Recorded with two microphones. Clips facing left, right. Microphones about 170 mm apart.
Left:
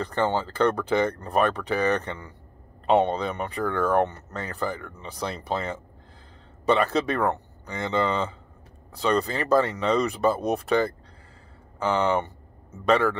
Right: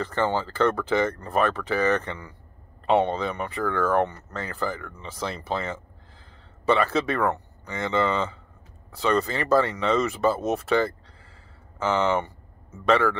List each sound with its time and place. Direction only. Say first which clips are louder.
0.0 s speech: even; 15° left (ahead or behind)